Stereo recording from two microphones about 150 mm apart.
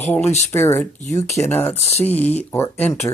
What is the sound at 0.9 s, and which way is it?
Speech, 50° left (ahead or behind).